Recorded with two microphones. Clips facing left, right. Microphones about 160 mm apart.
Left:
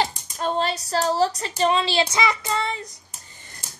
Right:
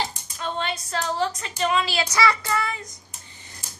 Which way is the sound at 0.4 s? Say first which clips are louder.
Left 5 dB; 35° left (ahead or behind).